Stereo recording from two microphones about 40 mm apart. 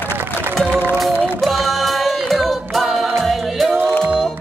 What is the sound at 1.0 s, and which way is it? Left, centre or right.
Music, centre.